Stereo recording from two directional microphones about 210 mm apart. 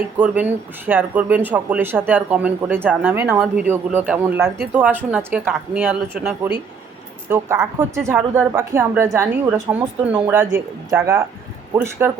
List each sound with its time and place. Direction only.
0.2 s speech: 10° right (ahead or behind)